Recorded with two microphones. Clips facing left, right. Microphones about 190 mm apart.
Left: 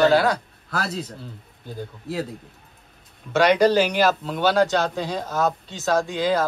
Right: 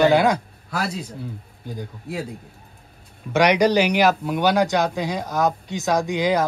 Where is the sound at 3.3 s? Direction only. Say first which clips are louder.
Even; 15° right (ahead or behind).